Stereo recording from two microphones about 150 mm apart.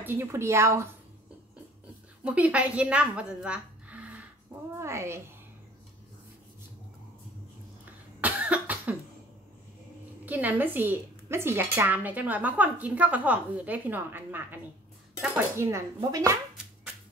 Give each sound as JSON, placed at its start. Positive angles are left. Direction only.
{"t": 0.0, "sound": "speech", "side_deg": -15}
{"t": 2.2, "sound": "a woman's voice", "side_deg": -10}
{"t": 8.2, "sound": "cough", "side_deg": -10}
{"t": 10.2, "sound": "speech", "side_deg": -10}